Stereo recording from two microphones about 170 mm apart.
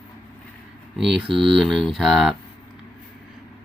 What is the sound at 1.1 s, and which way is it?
Speech, 30° right (ahead or behind).